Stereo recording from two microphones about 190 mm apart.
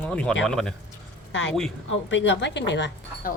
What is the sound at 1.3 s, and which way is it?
A woman's voice, 75° left (ahead or behind).